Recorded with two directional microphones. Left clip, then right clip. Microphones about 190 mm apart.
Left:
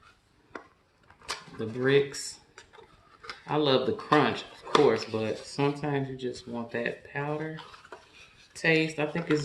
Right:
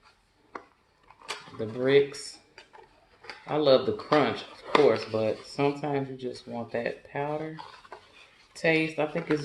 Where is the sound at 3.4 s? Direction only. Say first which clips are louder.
Right 3 dB; 35° left (ahead or behind).